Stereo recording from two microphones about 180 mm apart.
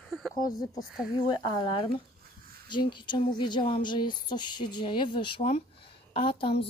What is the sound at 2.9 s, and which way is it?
A woman's voice, 25° left (ahead or behind).